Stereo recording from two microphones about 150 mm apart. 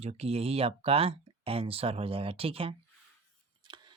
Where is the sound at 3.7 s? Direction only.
30° right (ahead or behind).